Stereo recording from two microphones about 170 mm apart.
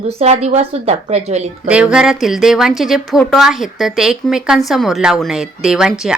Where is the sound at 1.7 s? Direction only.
5° right (ahead or behind).